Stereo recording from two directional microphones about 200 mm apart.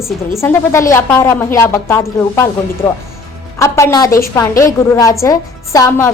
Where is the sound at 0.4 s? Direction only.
15° left (ahead or behind).